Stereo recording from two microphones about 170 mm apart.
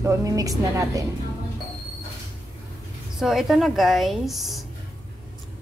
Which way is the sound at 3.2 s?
Centre (ahead or behind).